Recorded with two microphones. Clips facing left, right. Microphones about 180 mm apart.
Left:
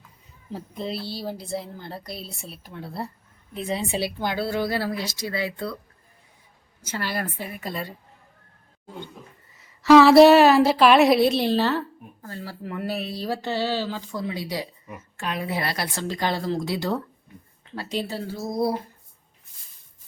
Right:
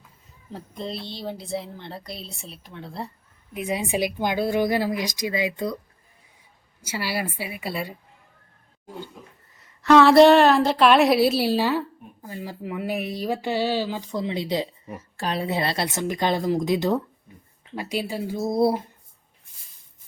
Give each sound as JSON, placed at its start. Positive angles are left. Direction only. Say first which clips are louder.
{"t": 0.5, "sound": "speech", "louder": "left 2 dB", "side_deg": 5}
{"t": 3.5, "sound": "speech", "louder": "right 1 dB", "side_deg": -10}
{"t": 6.8, "sound": "speech", "louder": "right 1 dB", "side_deg": -10}
{"t": 9.5, "sound": "speech", "louder": "left 3 dB", "side_deg": 0}
{"t": 18.3, "sound": "speech", "louder": "right 5 dB", "side_deg": -25}